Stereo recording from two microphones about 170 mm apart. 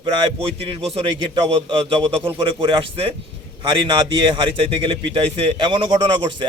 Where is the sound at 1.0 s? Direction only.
30° right (ahead or behind).